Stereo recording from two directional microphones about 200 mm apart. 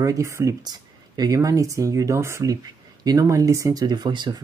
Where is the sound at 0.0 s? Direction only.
15° right (ahead or behind).